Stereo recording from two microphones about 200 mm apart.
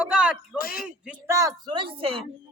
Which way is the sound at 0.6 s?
45° left (ahead or behind).